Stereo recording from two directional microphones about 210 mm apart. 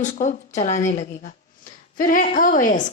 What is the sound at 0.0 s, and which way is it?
A woman's voice, 35° left (ahead or behind).